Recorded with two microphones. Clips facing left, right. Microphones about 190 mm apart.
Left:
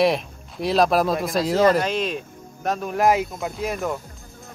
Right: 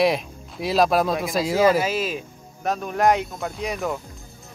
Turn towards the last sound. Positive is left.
turn(degrees=0)  # may be behind; listen again after turning